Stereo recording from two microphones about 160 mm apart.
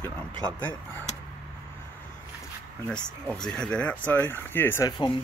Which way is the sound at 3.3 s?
5° left (ahead or behind).